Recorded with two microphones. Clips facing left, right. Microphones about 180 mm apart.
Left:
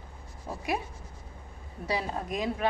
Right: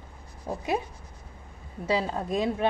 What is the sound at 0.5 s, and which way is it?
Speech, 25° right (ahead or behind).